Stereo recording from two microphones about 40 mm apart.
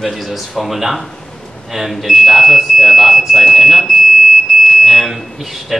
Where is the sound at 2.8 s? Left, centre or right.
Centre.